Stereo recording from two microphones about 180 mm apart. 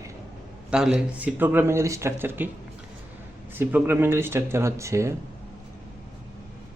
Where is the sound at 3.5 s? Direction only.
10° right (ahead or behind).